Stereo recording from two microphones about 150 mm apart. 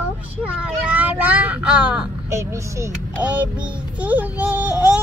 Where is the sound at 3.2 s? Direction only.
10° right (ahead or behind).